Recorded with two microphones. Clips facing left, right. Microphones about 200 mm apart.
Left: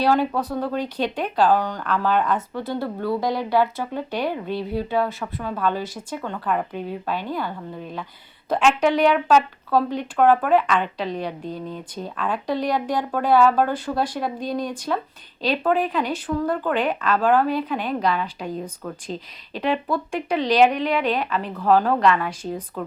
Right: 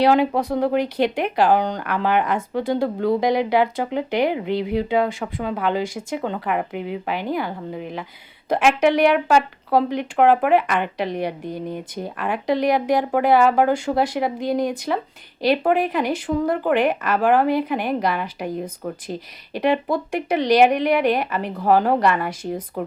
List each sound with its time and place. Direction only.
0.0 s speech: 15° right (ahead or behind)